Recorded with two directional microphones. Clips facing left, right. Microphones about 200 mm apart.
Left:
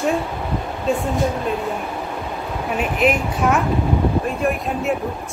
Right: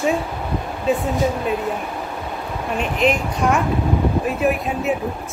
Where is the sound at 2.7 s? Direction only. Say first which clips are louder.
Even; 5° left (ahead or behind).